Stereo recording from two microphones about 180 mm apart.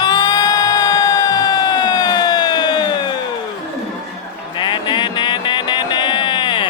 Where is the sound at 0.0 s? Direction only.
25° left (ahead or behind).